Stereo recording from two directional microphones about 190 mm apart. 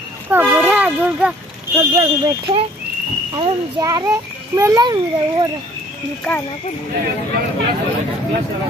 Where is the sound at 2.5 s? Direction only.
30° right (ahead or behind).